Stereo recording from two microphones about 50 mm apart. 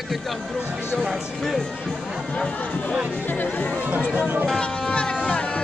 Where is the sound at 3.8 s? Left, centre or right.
Right.